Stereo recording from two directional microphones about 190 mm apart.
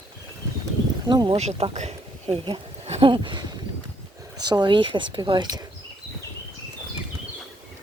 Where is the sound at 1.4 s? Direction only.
35° right (ahead or behind).